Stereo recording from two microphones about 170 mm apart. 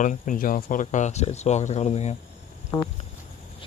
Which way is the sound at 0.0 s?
50° left (ahead or behind).